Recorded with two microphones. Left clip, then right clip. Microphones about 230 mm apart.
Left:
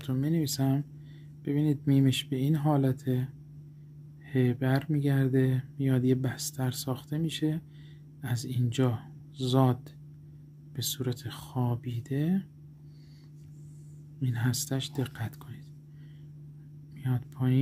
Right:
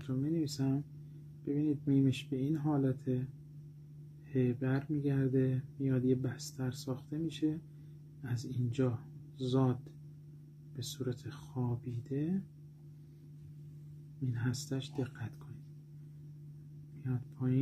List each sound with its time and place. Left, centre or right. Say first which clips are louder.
0.1 s speech: left 5 dB; left
4.3 s speech: left 6 dB; left
10.8 s speech: left 7 dB; left
14.2 s speech: left 7 dB; left
17.0 s speech: left 6 dB; left